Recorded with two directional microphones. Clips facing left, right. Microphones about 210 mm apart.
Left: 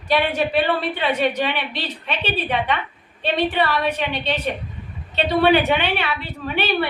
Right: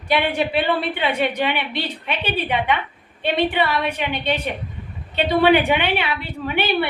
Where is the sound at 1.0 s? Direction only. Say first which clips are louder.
Even; 15° right (ahead or behind).